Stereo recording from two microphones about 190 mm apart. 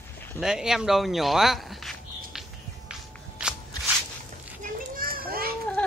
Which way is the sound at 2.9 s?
5° right (ahead or behind).